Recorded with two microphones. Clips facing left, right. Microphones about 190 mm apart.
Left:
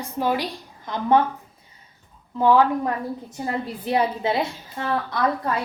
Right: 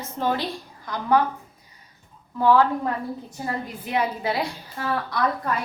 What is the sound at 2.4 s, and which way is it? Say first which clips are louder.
Speech: left 1 dB; 20° left (ahead or behind).